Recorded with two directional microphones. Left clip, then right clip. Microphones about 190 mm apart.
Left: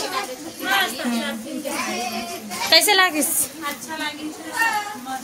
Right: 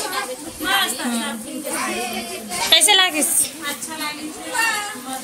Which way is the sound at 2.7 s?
15° left (ahead or behind).